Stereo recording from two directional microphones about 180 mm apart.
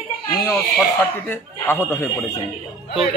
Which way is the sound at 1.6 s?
15° left (ahead or behind).